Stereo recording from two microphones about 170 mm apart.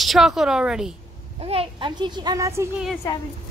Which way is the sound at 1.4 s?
30° right (ahead or behind).